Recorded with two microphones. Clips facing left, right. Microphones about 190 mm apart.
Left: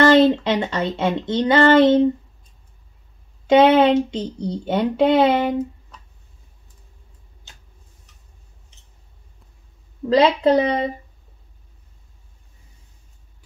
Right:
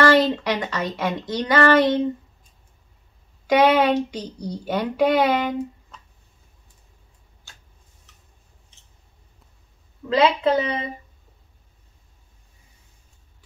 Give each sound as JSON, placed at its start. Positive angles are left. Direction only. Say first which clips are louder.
{"t": 0.0, "sound": "speech", "louder": "left 4 dB", "side_deg": 20}
{"t": 3.4, "sound": "speech", "louder": "left 4 dB", "side_deg": 25}
{"t": 7.5, "sound": "tick-tock", "louder": "left 1 dB", "side_deg": 20}
{"t": 10.0, "sound": "a woman's voice", "louder": "left 3 dB", "side_deg": 35}